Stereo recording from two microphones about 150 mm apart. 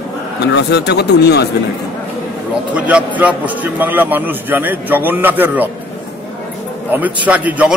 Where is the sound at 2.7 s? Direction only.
10° right (ahead or behind).